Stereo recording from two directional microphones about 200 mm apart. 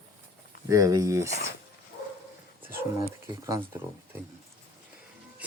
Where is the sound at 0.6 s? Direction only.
15° right (ahead or behind).